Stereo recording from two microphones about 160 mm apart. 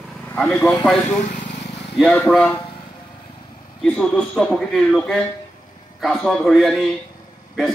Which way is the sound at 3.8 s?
5° left (ahead or behind).